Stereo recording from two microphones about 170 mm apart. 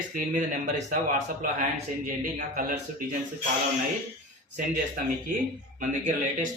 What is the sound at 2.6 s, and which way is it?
Speech, 55° right (ahead or behind).